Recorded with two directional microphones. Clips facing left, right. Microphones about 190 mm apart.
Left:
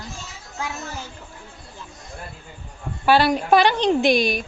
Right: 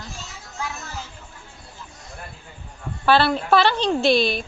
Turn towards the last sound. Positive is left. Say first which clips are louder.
# even
turn(degrees=15)  # may be behind; listen again after turning